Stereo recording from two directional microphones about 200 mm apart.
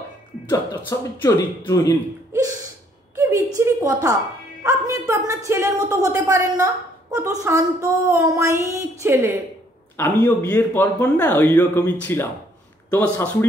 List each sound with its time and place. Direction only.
0.9 s speech: 15° left (ahead or behind)
3.2 s a sound: 15° right (ahead or behind)
4.6 s a woman's voice: 15° right (ahead or behind)
9.9 s speech: 10° left (ahead or behind)